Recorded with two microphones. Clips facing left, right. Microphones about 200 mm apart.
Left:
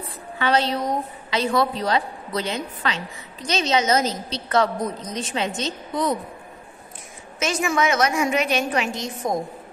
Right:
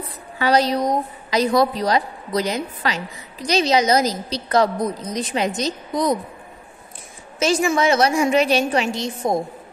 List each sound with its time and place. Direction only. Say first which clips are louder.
0.4 s a woman's voice: right 4 dB; 40° right (ahead or behind)
7.3 s a woman's voice: right 4 dB; 30° right (ahead or behind)